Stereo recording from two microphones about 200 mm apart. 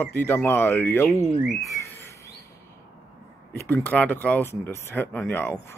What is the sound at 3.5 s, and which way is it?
Speech, 10° left (ahead or behind).